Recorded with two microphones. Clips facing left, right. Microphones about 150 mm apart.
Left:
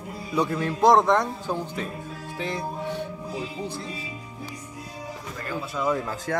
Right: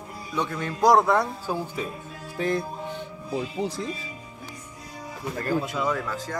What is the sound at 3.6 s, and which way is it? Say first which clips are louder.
Speech: right 4 dB; 90° right.